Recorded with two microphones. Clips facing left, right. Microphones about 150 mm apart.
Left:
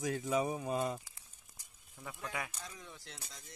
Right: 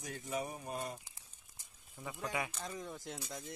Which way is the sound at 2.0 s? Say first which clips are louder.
Right 3 dB; 10° right (ahead or behind).